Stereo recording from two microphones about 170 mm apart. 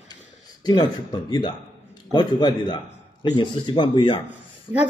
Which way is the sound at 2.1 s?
25° left (ahead or behind).